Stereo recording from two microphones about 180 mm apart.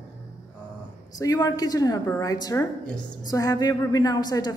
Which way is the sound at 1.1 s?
20° left (ahead or behind).